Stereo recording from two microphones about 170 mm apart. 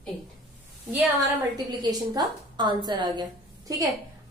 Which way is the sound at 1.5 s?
25° right (ahead or behind).